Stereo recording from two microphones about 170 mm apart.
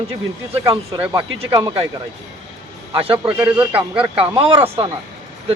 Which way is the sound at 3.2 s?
10° right (ahead or behind).